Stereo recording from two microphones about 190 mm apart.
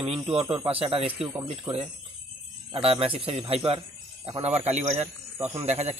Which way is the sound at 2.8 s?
30° right (ahead or behind).